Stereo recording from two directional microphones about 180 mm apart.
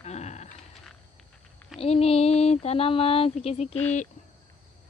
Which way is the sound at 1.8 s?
35° left (ahead or behind).